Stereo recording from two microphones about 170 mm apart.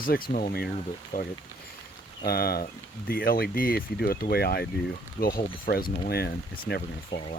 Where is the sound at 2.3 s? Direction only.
65° left (ahead or behind).